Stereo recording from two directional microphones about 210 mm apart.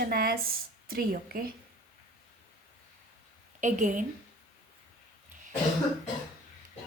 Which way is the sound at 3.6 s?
35° right (ahead or behind).